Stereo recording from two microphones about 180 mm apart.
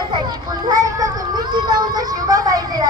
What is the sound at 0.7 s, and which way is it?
A child's voice, 20° right (ahead or behind).